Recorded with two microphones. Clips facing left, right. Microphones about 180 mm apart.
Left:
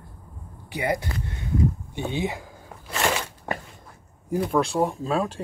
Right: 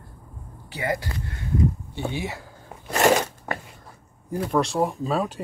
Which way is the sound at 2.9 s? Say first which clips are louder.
Right 7 dB; 40° right (ahead or behind).